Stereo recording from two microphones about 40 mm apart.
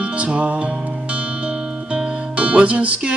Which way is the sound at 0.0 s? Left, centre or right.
Right.